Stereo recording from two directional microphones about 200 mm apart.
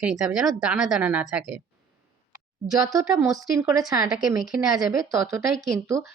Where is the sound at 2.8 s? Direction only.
15° right (ahead or behind).